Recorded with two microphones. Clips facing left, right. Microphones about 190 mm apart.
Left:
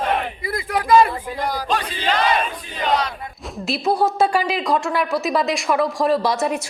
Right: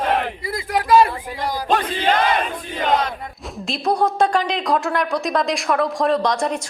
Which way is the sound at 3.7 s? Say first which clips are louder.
Even; 5° left (ahead or behind).